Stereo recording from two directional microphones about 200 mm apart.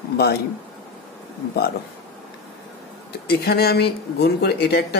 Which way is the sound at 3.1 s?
50° left (ahead or behind).